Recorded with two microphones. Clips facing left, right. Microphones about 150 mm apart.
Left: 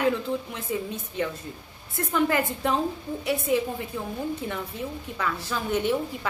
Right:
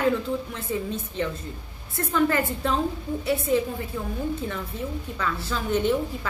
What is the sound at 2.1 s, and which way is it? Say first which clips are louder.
Speech: right 1 dB; 15° left (ahead or behind).